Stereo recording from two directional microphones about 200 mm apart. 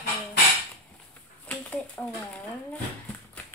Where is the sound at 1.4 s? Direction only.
5° left (ahead or behind).